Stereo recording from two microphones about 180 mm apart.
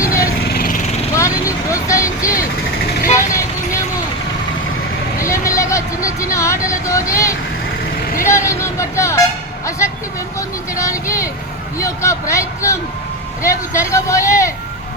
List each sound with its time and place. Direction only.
0.4 s a sound: 55° left (ahead or behind)
1.1 s vehicle: 15° left (ahead or behind)
3.0 s vehicle: 45° left (ahead or behind)
5.2 s vehicle: 15° left (ahead or behind)
6.3 s speech: 15° left (ahead or behind)